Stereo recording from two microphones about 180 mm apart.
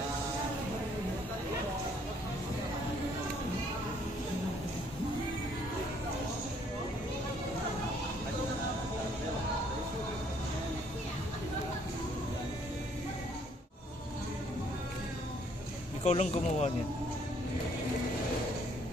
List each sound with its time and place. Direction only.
16.0 s speech: 40° left (ahead or behind)